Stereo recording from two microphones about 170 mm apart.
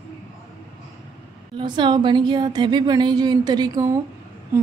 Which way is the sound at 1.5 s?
25° right (ahead or behind).